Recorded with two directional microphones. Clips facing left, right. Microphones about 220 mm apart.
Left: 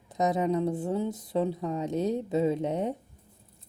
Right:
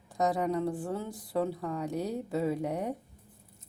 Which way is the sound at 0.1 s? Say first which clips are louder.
Left 3 dB; 20° left (ahead or behind).